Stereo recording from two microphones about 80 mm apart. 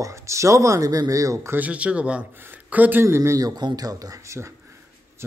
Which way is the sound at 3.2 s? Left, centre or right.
Right.